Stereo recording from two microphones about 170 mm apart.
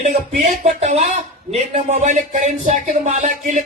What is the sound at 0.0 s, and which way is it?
A man's voice, 50° right (ahead or behind).